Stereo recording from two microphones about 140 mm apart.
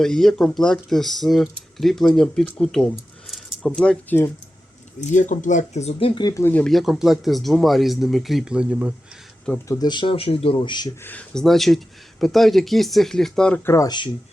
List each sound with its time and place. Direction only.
0.0 s speech: 5° left (ahead or behind)
4.9 s speech: 60° left (ahead or behind); by 6.2 s 40° left (ahead or behind)
6.2 s speech: 20° left (ahead or behind)
6.5 s speech: 5° left (ahead or behind)
9.6 s speech: 30° left (ahead or behind)
11.0 s speech: 10° left (ahead or behind)
13.7 s speech: 25° left (ahead or behind)